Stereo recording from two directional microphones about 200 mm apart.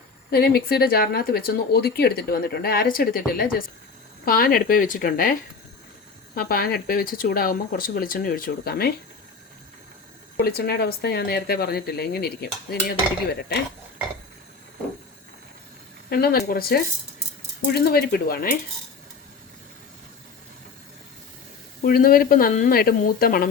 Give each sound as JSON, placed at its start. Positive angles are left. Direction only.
{"t": 0.3, "sound": "speech", "side_deg": 50}
{"t": 10.3, "sound": "speech", "side_deg": 50}
{"t": 16.0, "sound": "speech", "side_deg": 50}
{"t": 21.8, "sound": "speech", "side_deg": 45}